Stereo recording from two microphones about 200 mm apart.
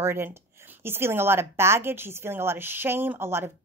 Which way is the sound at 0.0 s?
10° right (ahead or behind).